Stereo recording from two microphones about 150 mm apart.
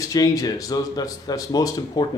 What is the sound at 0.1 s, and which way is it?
Speech, 25° left (ahead or behind).